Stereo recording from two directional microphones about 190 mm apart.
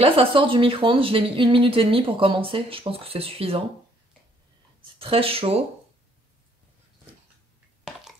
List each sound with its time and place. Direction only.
0.0 s speech: 30° right (ahead or behind)
4.9 s speech: 30° right (ahead or behind)